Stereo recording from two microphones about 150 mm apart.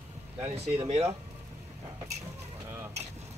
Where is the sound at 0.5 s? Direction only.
45° right (ahead or behind).